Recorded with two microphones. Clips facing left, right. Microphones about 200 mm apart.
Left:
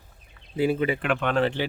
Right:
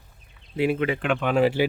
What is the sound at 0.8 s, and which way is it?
Speech, 5° left (ahead or behind).